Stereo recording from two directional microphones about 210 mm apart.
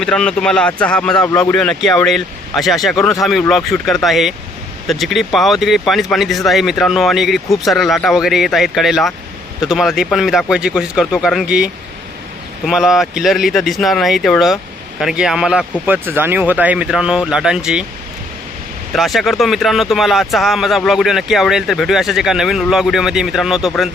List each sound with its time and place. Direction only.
0.0 s speech: 5° left (ahead or behind)
1.1 s speech: 15° left (ahead or behind)
1.4 s speech: 5° left (ahead or behind)
18.9 s speech: centre (ahead or behind)